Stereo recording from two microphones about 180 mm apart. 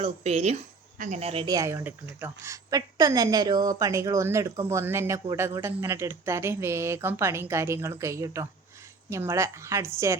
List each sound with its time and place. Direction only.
0.0 s speech: 35° right (ahead or behind)
1.5 s a woman's voice: 20° right (ahead or behind)